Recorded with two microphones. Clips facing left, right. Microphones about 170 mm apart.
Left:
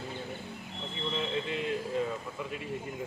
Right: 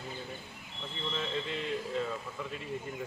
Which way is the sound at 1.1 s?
10° left (ahead or behind).